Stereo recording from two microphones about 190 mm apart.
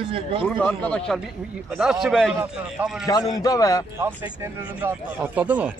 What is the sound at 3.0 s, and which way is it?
Speech, 20° left (ahead or behind).